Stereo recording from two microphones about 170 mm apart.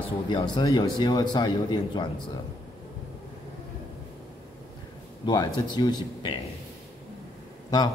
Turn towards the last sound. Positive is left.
turn(degrees=25)  # may be behind; listen again after turning